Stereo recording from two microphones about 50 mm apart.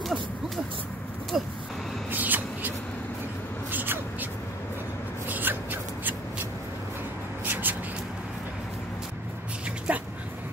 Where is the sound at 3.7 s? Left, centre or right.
Right.